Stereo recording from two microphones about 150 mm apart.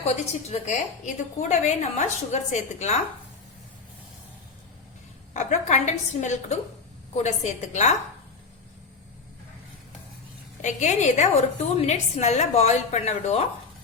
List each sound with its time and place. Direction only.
0.0 s a woman's voice: 45° left (ahead or behind)
5.3 s a woman's voice: 55° left (ahead or behind)
10.6 s a woman's voice: 55° left (ahead or behind)